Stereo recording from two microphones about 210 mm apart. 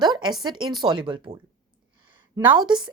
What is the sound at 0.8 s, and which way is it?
A woman's voice, 20° right (ahead or behind).